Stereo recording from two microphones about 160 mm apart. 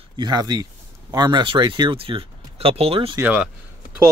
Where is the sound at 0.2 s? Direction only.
25° right (ahead or behind).